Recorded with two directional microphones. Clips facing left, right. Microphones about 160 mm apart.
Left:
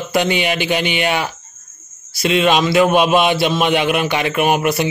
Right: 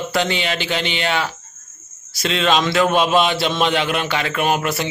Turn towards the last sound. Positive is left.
turn(degrees=15)  # may be behind; listen again after turning